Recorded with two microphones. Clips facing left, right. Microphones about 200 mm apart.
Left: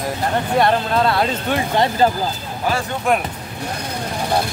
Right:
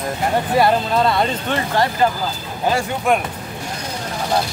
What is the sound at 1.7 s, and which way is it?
Speech, 20° left (ahead or behind).